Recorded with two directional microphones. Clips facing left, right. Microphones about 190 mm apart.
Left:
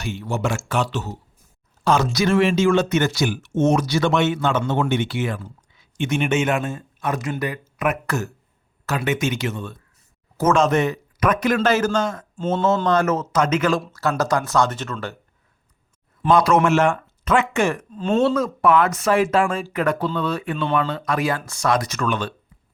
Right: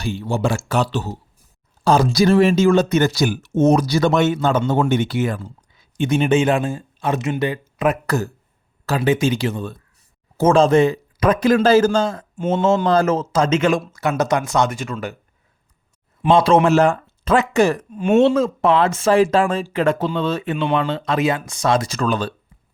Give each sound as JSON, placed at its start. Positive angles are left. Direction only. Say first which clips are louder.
{"t": 0.0, "sound": "a man's voice", "louder": "right 4 dB", "side_deg": -30}
{"t": 12.4, "sound": "speech", "louder": "right 3 dB", "side_deg": -10}
{"t": 12.9, "sound": "speech", "louder": "right 3 dB", "side_deg": -30}
{"t": 16.3, "sound": "speech", "louder": "right 3 dB", "side_deg": -25}
{"t": 17.9, "sound": "speech", "louder": "right 5 dB", "side_deg": -15}